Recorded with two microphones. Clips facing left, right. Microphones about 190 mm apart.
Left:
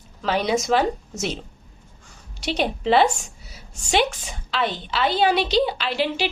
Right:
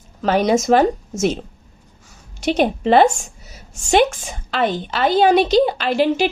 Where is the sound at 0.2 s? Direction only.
45° right (ahead or behind).